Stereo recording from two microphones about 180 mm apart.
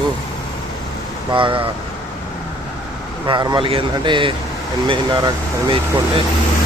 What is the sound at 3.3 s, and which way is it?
Speech, 25° right (ahead or behind).